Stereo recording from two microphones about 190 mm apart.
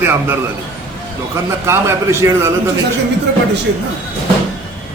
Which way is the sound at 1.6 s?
15° right (ahead or behind).